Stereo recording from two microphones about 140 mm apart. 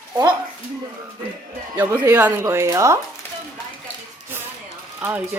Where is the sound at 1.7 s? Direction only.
15° right (ahead or behind).